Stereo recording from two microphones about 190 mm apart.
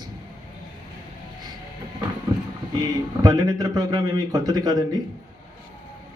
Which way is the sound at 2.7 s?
20° right (ahead or behind).